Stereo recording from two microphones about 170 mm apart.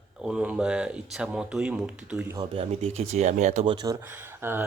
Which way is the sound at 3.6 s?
25° right (ahead or behind).